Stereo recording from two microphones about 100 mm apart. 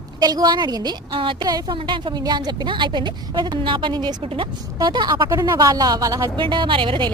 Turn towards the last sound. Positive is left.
turn(degrees=-60)  # may be behind; listen again after turning